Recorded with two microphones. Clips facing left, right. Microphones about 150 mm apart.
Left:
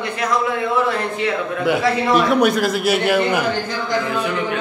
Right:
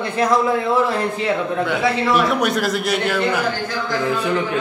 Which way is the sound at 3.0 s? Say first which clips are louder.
Left 3 dB; 15° left (ahead or behind).